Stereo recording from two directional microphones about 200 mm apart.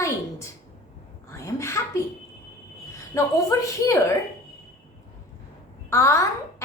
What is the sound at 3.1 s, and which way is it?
Speech, 15° left (ahead or behind).